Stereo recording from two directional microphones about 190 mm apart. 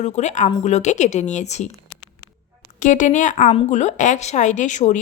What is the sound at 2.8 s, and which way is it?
A woman's voice, 40° left (ahead or behind).